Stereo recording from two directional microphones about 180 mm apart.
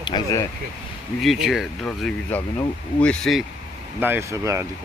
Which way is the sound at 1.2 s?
Centre (ahead or behind).